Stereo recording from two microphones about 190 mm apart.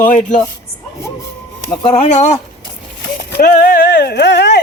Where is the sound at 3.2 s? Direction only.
60° left (ahead or behind).